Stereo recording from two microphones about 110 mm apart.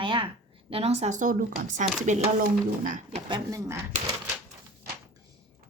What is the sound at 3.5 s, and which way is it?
Speech, 30° right (ahead or behind).